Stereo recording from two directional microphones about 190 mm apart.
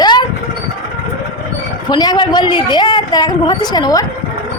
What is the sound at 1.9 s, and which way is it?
A woman's voice, 20° left (ahead or behind).